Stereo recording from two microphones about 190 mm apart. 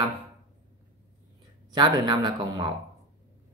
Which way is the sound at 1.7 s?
25° right (ahead or behind).